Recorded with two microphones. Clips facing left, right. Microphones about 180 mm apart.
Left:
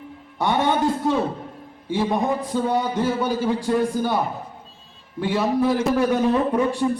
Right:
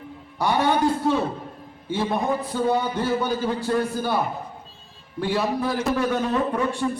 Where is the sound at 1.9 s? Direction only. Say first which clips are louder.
Left 2 dB; 15° left (ahead or behind).